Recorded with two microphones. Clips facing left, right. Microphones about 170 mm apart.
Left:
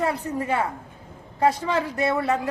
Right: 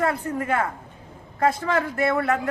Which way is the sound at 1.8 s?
20° left (ahead or behind).